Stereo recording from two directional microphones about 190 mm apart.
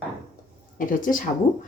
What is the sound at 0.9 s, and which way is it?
Speech, 45° left (ahead or behind).